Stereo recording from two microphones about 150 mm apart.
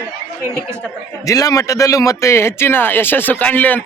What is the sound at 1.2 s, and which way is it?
A man's voice, 20° left (ahead or behind).